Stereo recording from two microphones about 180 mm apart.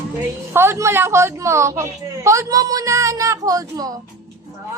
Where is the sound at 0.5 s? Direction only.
15° right (ahead or behind).